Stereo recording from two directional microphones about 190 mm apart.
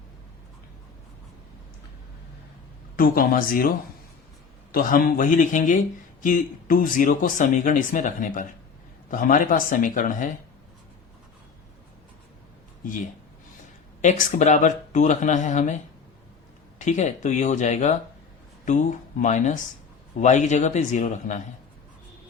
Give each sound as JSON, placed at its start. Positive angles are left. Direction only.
{"t": 2.9, "sound": "speech", "side_deg": 50}
{"t": 4.7, "sound": "speech", "side_deg": 50}
{"t": 12.8, "sound": "speech", "side_deg": 45}